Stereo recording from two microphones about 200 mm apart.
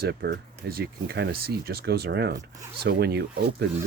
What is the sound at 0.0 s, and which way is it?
Speech, 60° right (ahead or behind).